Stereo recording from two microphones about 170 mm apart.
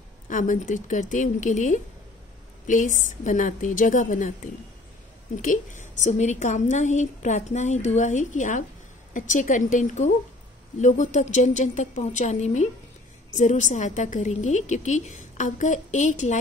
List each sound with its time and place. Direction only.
0.3 s a woman's voice: 50° left (ahead or behind)
5.4 s a woman's voice: 50° left (ahead or behind)